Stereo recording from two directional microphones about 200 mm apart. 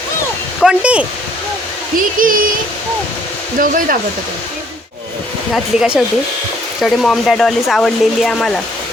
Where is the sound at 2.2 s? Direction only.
45° right (ahead or behind).